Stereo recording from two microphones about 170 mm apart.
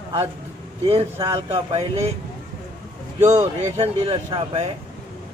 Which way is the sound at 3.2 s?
45° right (ahead or behind).